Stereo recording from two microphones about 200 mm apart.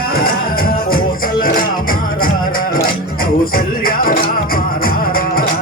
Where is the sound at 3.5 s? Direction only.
45° left (ahead or behind).